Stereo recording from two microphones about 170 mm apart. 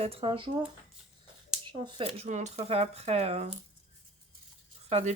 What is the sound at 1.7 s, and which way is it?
Speech, 30° right (ahead or behind).